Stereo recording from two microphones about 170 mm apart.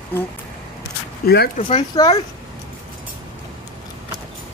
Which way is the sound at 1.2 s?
65° left (ahead or behind).